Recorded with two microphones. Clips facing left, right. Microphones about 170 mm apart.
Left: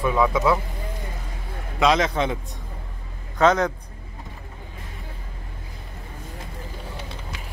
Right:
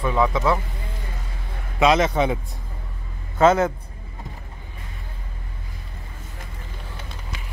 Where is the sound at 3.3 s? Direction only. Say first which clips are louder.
Right 2 dB; 5° right (ahead or behind).